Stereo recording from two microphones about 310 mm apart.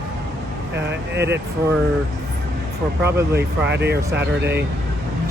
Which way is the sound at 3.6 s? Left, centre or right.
Right.